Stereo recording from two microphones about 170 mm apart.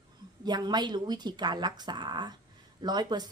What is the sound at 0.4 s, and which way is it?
A woman's voice, 25° right (ahead or behind).